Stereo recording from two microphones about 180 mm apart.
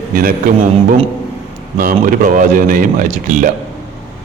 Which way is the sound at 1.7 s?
50° right (ahead or behind).